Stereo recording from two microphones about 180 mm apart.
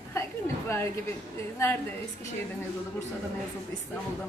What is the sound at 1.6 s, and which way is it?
Speech, 15° left (ahead or behind).